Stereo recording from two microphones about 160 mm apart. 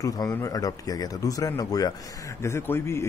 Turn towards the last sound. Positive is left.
turn(degrees=15)  # may be behind; listen again after turning